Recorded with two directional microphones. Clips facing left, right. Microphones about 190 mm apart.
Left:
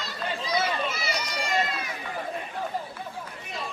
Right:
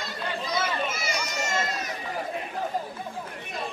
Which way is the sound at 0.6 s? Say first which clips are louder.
Even; 50° right (ahead or behind).